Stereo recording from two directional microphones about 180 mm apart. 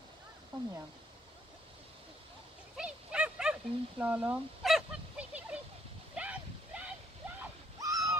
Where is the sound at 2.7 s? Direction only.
5° right (ahead or behind).